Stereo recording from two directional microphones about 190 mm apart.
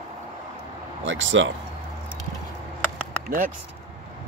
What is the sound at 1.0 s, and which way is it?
Speech, 80° right.